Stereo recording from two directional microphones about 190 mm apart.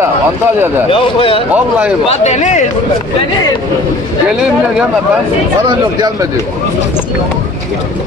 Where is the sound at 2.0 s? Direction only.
35° left (ahead or behind).